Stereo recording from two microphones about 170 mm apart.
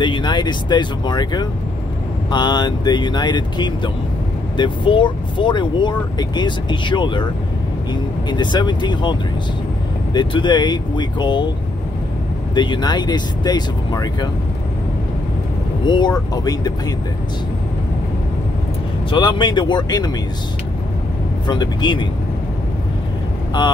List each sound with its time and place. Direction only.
0.0 s speech: 25° left (ahead or behind)
12.5 s speech: 25° left (ahead or behind)
15.8 s speech: 25° left (ahead or behind)
19.0 s speech: 30° left (ahead or behind)
21.5 s speech: 25° left (ahead or behind)